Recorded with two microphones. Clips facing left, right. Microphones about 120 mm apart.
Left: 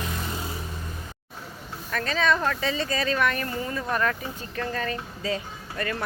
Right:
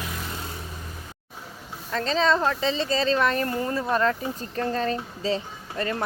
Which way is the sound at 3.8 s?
25° right (ahead or behind).